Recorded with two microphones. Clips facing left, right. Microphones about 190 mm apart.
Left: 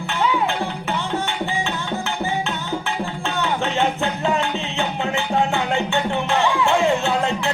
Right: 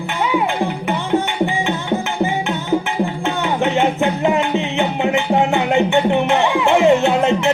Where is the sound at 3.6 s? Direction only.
15° right (ahead or behind).